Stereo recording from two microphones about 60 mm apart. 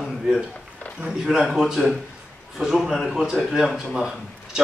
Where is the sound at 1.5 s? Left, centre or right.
Centre.